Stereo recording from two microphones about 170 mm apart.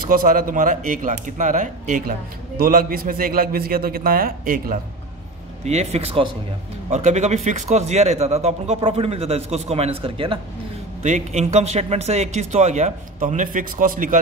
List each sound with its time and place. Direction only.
0.1 s speech: 55° right (ahead or behind)
5.7 s a man's voice: 40° right (ahead or behind)
11.0 s speech: 45° right (ahead or behind)